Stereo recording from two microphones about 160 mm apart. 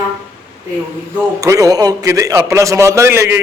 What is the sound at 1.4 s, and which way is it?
A man's voice, 20° right (ahead or behind).